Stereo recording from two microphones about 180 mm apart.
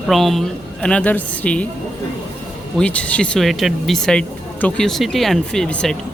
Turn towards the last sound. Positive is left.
turn(degrees=5)  # may be behind; listen again after turning